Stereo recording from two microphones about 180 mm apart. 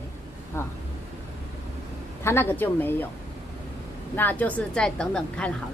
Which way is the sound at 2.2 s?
10° left (ahead or behind).